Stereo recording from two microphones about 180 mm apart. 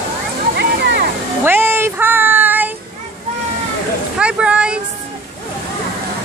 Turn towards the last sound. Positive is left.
turn(degrees=-5)  # may be behind; listen again after turning